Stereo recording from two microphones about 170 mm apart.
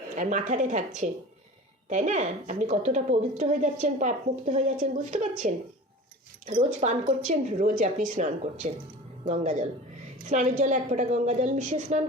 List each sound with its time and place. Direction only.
0.2 s a woman's voice: 50° right (ahead or behind)
6.4 s a woman's voice: 45° right (ahead or behind)